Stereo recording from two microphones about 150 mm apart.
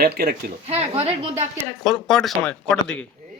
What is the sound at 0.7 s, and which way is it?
Speech, 45° right (ahead or behind).